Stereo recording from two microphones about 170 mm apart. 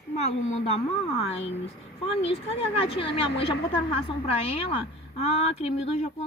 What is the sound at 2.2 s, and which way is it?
A woman's voice, 35° left (ahead or behind).